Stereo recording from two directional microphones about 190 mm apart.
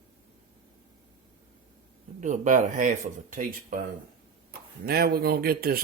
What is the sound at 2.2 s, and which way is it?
Speech, 40° right (ahead or behind).